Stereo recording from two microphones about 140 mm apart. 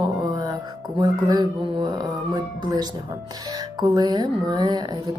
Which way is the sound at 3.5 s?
30° right (ahead or behind).